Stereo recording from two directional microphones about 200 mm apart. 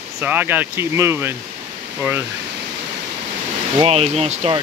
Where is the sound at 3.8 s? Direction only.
30° right (ahead or behind).